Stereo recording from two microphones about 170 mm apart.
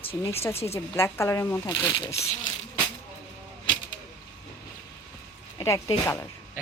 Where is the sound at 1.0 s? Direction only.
15° left (ahead or behind).